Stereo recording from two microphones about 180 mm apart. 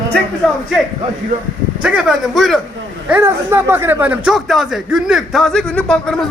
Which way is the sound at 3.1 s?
15° right (ahead or behind).